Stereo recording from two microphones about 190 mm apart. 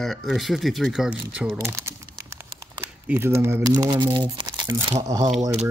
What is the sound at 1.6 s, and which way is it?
Crumpling, 15° right (ahead or behind).